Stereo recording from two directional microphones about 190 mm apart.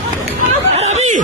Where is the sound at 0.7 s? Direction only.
35° right (ahead or behind).